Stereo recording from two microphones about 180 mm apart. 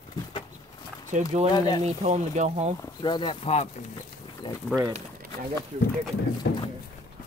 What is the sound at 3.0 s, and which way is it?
Speech, 25° left (ahead or behind).